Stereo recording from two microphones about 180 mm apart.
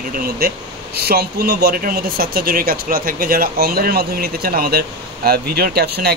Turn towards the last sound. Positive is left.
turn(degrees=-60)  # may be behind; listen again after turning